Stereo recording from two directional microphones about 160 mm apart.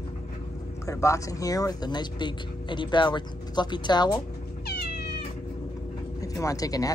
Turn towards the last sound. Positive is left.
turn(degrees=20)  # may be behind; listen again after turning